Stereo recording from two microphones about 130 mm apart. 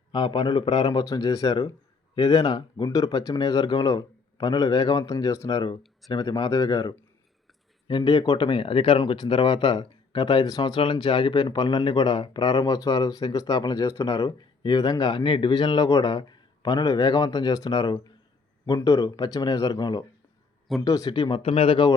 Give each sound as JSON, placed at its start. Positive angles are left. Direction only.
{"t": 0.1, "sound": "speech", "side_deg": 35}
{"t": 1.0, "sound": "speech", "side_deg": 30}